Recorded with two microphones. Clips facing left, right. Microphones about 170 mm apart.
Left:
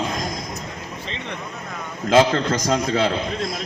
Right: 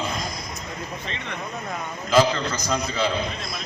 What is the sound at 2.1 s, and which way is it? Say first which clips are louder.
Speech: left 3 dB; 50° left (ahead or behind).